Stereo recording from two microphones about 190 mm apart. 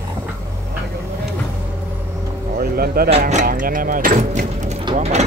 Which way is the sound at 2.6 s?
50° right (ahead or behind).